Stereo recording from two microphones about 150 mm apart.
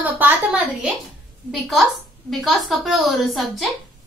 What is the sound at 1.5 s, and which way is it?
A woman's voice, centre (ahead or behind).